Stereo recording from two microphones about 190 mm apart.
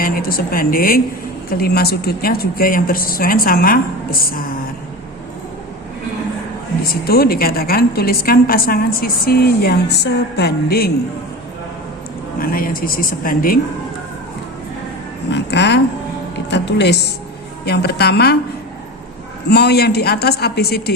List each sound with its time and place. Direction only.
0.0 s a woman's voice: 50° left (ahead or behind)
6.8 s a woman's voice: 55° left (ahead or behind)
12.4 s a woman's voice: 50° left (ahead or behind)
15.3 s a sound: 65° left (ahead or behind)
16.3 s a woman's voice: 65° left (ahead or behind)
19.5 s a woman's voice: 60° left (ahead or behind)